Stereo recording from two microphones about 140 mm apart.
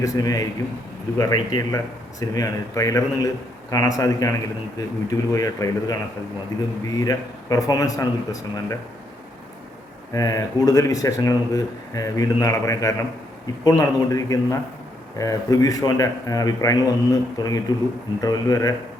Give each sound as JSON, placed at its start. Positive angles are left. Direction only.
{"t": 0.0, "sound": "speech", "side_deg": 25}
{"t": 10.1, "sound": "speech", "side_deg": 25}